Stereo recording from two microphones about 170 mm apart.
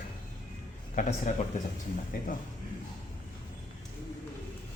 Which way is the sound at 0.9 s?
45° left (ahead or behind).